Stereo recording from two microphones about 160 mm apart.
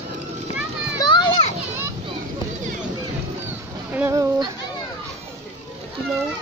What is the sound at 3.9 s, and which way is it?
Speech, 15° right (ahead or behind).